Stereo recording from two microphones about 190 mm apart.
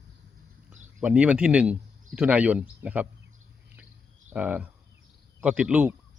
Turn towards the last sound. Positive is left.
turn(degrees=-5)  # may be behind; listen again after turning